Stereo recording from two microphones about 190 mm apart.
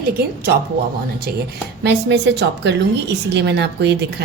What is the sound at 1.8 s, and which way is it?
A woman's voice, 65° right (ahead or behind).